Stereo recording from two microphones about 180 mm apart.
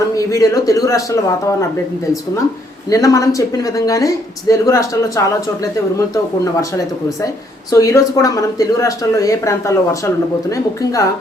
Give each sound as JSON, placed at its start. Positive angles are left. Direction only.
{"t": 0.2, "sound": "speech", "side_deg": 20}
{"t": 2.9, "sound": "speech", "side_deg": 20}
{"t": 6.4, "sound": "speech", "side_deg": 15}